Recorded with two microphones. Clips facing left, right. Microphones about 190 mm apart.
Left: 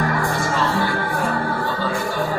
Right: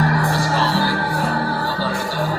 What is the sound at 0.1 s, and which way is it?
Music, 35° right (ahead or behind).